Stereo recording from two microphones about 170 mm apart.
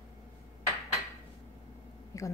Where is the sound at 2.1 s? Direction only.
20° left (ahead or behind).